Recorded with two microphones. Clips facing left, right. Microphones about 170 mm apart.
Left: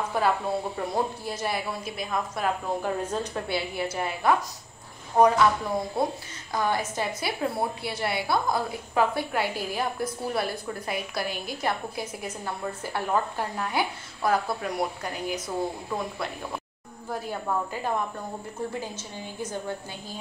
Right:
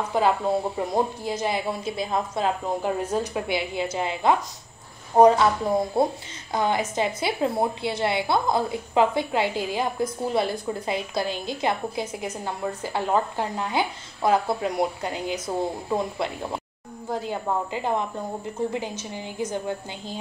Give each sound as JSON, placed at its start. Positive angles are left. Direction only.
{"t": 0.1, "sound": "a woman's voice", "side_deg": -20}
{"t": 3.1, "sound": "a woman's voice", "side_deg": -10}
{"t": 6.5, "sound": "a woman's voice", "side_deg": -20}